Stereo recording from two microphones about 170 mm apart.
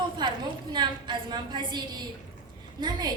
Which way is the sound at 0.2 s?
25° right (ahead or behind).